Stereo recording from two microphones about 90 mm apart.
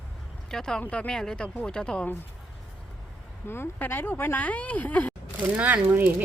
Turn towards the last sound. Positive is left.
turn(degrees=-20)  # may be behind; listen again after turning